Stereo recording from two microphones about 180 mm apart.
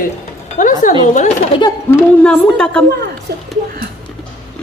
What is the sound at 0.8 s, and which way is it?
Speech, 50° left (ahead or behind).